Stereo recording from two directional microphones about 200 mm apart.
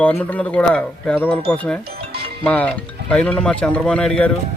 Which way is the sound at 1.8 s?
50° right (ahead or behind).